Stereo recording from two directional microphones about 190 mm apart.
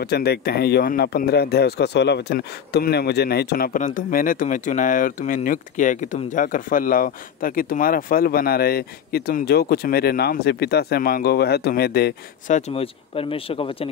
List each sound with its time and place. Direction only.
0.0 s speech: 60° left (ahead or behind)
12.5 s speech: 35° left (ahead or behind)